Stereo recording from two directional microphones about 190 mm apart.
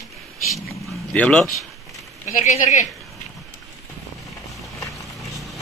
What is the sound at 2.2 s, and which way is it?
Speech, 40° left (ahead or behind).